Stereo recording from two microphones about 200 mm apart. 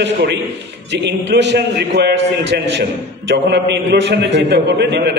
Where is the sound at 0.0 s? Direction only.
55° right (ahead or behind).